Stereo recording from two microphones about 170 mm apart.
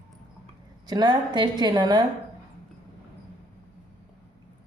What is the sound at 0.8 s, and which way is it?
A woman's voice, 25° right (ahead or behind).